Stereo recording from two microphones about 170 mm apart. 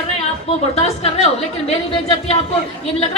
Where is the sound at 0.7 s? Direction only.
40° left (ahead or behind).